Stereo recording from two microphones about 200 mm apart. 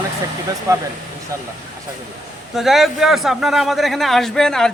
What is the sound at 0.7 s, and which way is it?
Speech, 15° right (ahead or behind).